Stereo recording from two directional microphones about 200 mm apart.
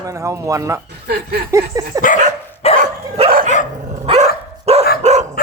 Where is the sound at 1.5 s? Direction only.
15° right (ahead or behind).